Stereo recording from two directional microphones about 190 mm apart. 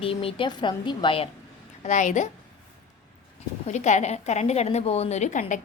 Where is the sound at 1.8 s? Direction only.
40° left (ahead or behind).